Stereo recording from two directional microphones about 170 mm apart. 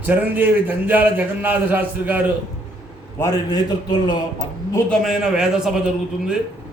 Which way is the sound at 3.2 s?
20° left (ahead or behind).